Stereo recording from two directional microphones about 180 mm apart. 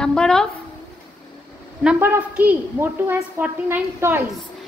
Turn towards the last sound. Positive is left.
turn(degrees=-15)  # may be behind; listen again after turning